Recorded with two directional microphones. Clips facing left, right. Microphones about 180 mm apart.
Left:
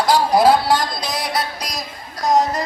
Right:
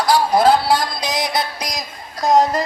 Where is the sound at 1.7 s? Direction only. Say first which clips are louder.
Right 1 dB; 25° right (ahead or behind).